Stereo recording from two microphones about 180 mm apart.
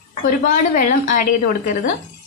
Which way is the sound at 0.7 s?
45° left (ahead or behind).